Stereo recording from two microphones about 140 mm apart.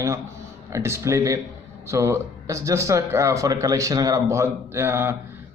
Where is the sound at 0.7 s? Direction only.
20° right (ahead or behind).